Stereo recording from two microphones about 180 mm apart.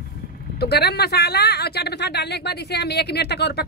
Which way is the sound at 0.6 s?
65° left (ahead or behind).